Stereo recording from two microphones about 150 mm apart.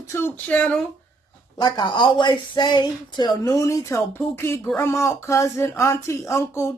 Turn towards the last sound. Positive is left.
turn(degrees=20)  # may be behind; listen again after turning